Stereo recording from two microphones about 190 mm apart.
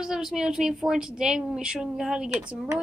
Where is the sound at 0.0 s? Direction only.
Centre (ahead or behind).